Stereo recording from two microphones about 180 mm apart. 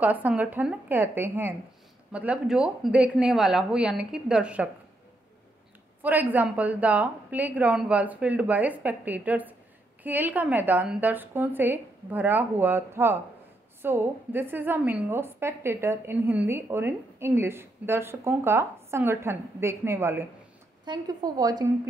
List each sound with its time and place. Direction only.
0.0 s a woman's voice: 10° right (ahead or behind)
6.3 s a woman's voice: 10° right (ahead or behind)